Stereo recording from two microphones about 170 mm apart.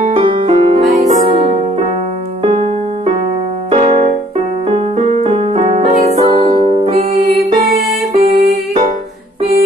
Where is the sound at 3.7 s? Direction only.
35° right (ahead or behind).